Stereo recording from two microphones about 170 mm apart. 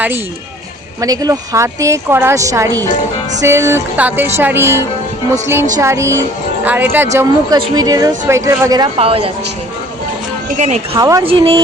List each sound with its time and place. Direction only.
1.0 s speech: 20° right (ahead or behind)
9.0 s speech: 35° right (ahead or behind)
10.9 s a woman's voice: 20° right (ahead or behind)
11.2 s speech: 30° right (ahead or behind)